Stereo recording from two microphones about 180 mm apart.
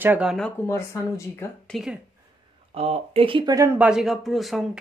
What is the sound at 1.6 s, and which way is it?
Speech, centre (ahead or behind).